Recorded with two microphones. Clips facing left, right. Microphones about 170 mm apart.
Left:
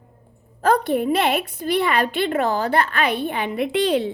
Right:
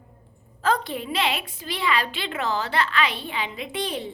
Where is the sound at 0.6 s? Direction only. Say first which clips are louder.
Left 7 dB; 60° left (ahead or behind).